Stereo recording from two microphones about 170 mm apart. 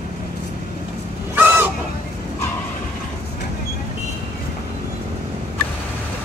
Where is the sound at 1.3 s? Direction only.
10° right (ahead or behind).